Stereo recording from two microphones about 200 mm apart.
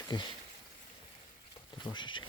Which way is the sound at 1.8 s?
20° left (ahead or behind).